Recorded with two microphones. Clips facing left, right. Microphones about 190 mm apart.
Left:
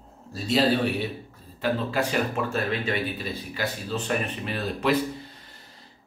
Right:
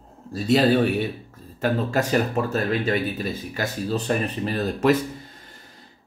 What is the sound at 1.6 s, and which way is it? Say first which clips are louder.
Speech: right 3 dB; 45° right (ahead or behind).